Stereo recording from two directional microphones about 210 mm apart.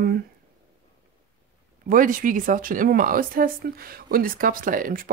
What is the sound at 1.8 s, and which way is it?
Speech, 40° right (ahead or behind).